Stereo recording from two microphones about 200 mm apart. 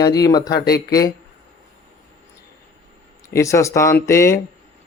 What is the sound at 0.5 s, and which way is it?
Speech, 50° left (ahead or behind).